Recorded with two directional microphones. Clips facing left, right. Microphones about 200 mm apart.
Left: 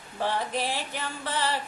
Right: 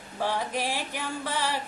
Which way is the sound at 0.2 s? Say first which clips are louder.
Even; 10° right (ahead or behind).